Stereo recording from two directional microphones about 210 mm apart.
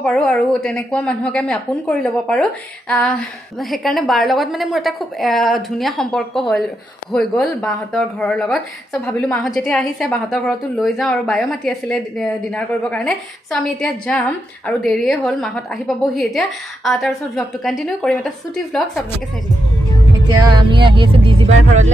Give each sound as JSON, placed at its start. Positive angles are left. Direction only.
{"t": 0.0, "sound": "a woman's voice", "side_deg": 5}
{"t": 20.2, "sound": "speech", "side_deg": -20}